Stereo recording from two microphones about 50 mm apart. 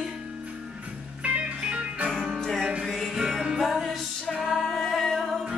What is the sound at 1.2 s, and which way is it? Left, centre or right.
Music, right.